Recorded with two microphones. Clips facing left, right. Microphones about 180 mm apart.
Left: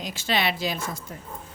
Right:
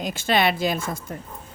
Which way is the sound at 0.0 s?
50° right (ahead or behind).